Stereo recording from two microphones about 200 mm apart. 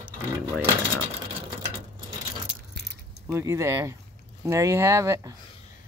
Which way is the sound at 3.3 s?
15° right (ahead or behind).